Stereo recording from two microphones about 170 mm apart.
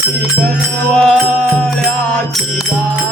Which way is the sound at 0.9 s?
5° left (ahead or behind).